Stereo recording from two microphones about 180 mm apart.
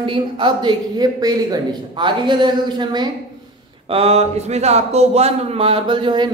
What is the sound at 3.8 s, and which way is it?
Speech, 35° right (ahead or behind).